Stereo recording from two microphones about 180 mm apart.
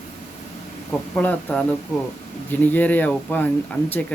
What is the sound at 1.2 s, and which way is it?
Speech, 10° left (ahead or behind).